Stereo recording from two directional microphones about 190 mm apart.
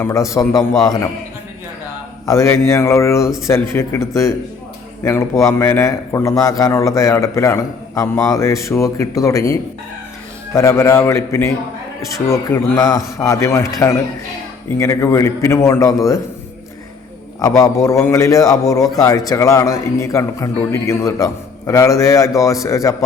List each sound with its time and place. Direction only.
0.0 s a man's voice: 15° left (ahead or behind)
2.2 s a man's voice: 15° left (ahead or behind)
17.6 s a man's voice: 15° left (ahead or behind)